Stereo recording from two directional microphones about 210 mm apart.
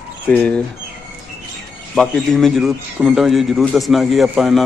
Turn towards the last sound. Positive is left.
turn(degrees=0)  # may be behind; listen again after turning